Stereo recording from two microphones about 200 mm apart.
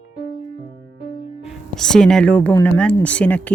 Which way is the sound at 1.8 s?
5° left (ahead or behind).